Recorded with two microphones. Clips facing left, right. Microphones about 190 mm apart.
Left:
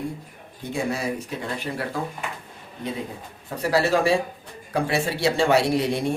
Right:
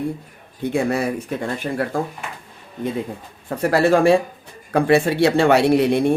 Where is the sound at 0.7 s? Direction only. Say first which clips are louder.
Right 6 dB; 60° right (ahead or behind).